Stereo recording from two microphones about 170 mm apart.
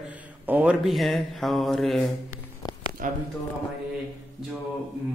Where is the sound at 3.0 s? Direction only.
55° right (ahead or behind).